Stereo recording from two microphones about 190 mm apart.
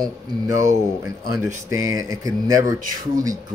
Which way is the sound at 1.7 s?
15° right (ahead or behind).